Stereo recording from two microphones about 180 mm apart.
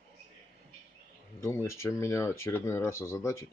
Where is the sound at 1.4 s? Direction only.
15° left (ahead or behind).